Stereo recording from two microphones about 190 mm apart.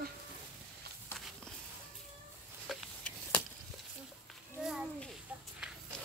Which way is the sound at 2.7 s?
5° left (ahead or behind).